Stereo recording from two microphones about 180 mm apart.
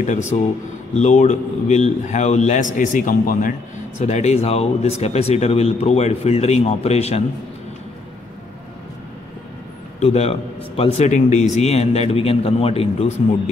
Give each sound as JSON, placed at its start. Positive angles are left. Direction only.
{"t": 0.3, "sound": "speech", "side_deg": 35}
{"t": 9.9, "sound": "speech", "side_deg": 35}